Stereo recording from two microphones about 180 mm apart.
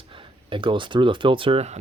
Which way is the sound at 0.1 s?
30° right (ahead or behind).